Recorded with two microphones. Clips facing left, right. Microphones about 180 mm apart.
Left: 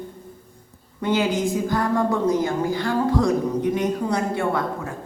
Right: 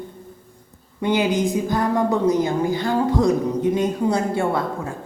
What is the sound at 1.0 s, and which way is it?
A woman's voice, 15° right (ahead or behind).